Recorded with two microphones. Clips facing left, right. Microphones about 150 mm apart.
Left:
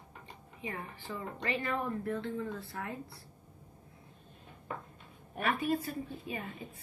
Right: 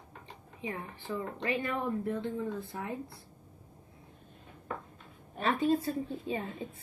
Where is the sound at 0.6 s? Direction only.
20° right (ahead or behind).